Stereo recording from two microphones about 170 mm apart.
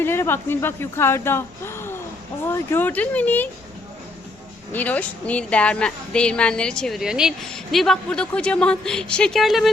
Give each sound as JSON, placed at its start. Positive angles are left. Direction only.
{"t": 0.0, "sound": "speech", "side_deg": 15}
{"t": 4.7, "sound": "speech", "side_deg": 10}